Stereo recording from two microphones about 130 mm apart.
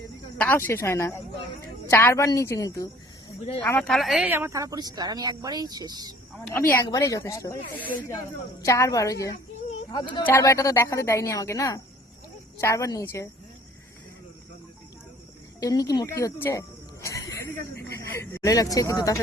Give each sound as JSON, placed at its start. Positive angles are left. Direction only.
{"t": 0.3, "sound": "a woman's voice", "side_deg": 15}
{"t": 3.8, "sound": "speech", "side_deg": 5}
{"t": 4.3, "sound": "speech", "side_deg": -20}
{"t": 6.5, "sound": "a woman's voice", "side_deg": 15}
{"t": 9.9, "sound": "speech", "side_deg": 35}
{"t": 10.2, "sound": "a woman's voice", "side_deg": 25}
{"t": 15.6, "sound": "a woman's voice", "side_deg": 30}